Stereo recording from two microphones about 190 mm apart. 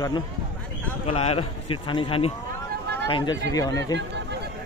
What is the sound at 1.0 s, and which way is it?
A man's voice, 30° left (ahead or behind).